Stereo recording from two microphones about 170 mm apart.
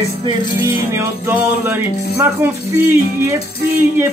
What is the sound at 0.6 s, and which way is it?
Music, 15° right (ahead or behind).